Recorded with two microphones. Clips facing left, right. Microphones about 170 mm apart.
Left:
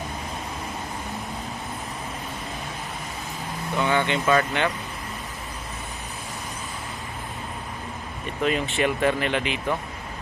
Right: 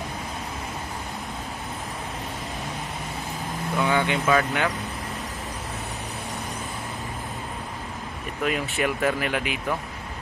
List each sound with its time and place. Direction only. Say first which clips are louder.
3.7 s speech: even; 10° right (ahead or behind)
8.5 s speech: left 2 dB; 5° right (ahead or behind)